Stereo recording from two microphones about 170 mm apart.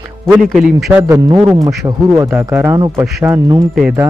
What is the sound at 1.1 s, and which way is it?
A man's voice, 20° right (ahead or behind).